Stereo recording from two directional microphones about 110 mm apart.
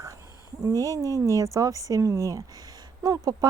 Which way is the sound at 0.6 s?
35° right (ahead or behind).